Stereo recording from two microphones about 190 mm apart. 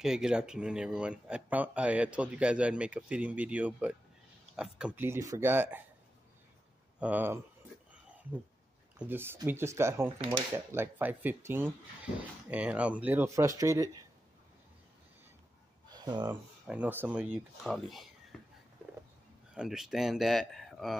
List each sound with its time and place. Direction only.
0.0 s speech: 5° right (ahead or behind)
7.0 s speech: 10° right (ahead or behind)
8.9 s speech: 10° right (ahead or behind)
10.0 s speech: 25° right (ahead or behind)
10.5 s speech: 10° right (ahead or behind)
15.9 s a sound: 20° right (ahead or behind)
16.3 s speech: 5° right (ahead or behind)
18.3 s a sound: 5° left (ahead or behind)
19.5 s speech: 5° right (ahead or behind)